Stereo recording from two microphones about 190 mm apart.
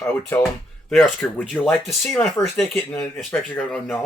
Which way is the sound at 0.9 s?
5° left (ahead or behind).